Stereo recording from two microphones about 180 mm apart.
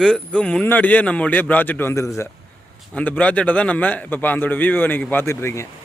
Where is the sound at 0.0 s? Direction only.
5° left (ahead or behind).